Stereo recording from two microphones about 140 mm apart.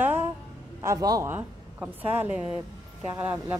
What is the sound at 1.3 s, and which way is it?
A woman's voice, 15° right (ahead or behind).